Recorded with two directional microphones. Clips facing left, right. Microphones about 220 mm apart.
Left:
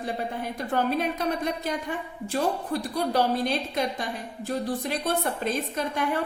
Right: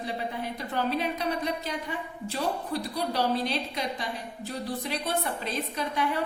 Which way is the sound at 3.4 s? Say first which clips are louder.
Left 4 dB; 50° left (ahead or behind).